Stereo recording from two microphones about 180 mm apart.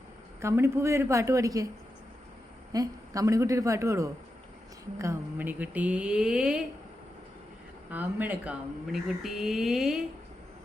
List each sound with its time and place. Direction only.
0.4 s speech: 15° right (ahead or behind)
2.7 s speech: 20° right (ahead or behind); by 6.6 s 5° right (ahead or behind)
7.9 s speech: 10° right (ahead or behind)